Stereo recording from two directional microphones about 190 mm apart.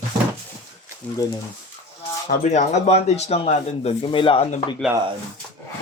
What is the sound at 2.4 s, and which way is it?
Speech, 40° left (ahead or behind).